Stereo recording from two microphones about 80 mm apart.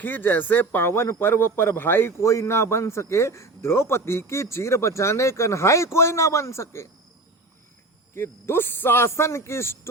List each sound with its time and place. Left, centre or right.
0.0 s a man's voice: left
8.1 s a man's voice: left